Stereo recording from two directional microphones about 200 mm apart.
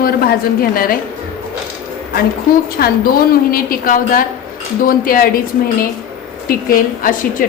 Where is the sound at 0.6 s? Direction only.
45° left (ahead or behind).